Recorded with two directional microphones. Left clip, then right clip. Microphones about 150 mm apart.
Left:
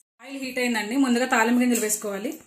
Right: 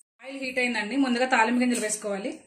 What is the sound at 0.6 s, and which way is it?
A woman's voice, 60° left (ahead or behind).